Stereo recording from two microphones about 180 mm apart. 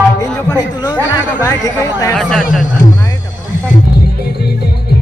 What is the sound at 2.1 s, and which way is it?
Speech, centre (ahead or behind).